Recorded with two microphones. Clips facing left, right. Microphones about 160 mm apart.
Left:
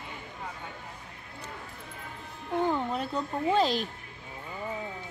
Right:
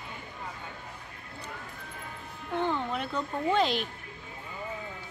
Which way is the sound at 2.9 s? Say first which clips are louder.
Left 1 dB; 35° left (ahead or behind).